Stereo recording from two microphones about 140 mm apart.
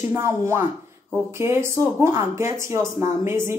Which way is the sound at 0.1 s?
20° right (ahead or behind).